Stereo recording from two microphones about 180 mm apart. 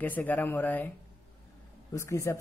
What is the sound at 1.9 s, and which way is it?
Speech, 15° left (ahead or behind).